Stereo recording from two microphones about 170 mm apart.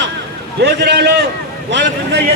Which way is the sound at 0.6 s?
75° right (ahead or behind).